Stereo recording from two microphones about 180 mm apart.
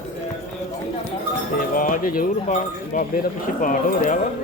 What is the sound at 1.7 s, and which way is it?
Speech, 50° left (ahead or behind).